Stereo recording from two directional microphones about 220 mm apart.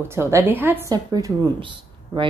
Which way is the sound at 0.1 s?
10° right (ahead or behind).